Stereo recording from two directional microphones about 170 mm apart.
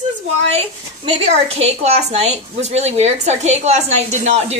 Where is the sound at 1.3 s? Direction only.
40° right (ahead or behind).